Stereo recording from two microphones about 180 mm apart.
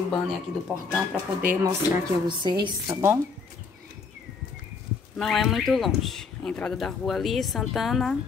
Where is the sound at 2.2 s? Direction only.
25° right (ahead or behind).